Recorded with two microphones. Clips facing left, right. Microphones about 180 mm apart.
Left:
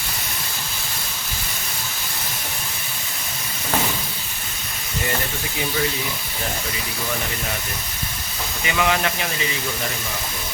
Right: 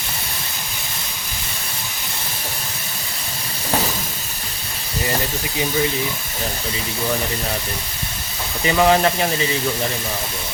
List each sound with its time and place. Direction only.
8.6 s speech: 35° right (ahead or behind)